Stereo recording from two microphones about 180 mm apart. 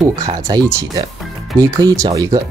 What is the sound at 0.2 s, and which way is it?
Speech, 20° right (ahead or behind).